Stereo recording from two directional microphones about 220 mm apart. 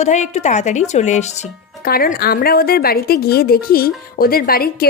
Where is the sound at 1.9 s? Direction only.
45° left (ahead or behind).